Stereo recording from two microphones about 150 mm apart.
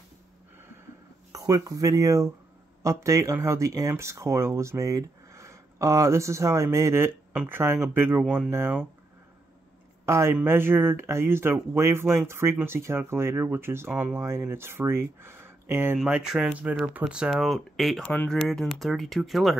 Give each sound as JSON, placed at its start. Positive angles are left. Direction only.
{"t": 1.3, "sound": "speech", "side_deg": -25}
{"t": 10.0, "sound": "speech", "side_deg": -20}
{"t": 16.0, "sound": "speech", "side_deg": -5}